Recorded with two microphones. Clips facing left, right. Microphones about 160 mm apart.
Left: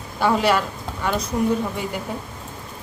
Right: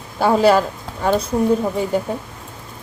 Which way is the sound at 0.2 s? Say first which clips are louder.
Right 5 dB; 35° right (ahead or behind).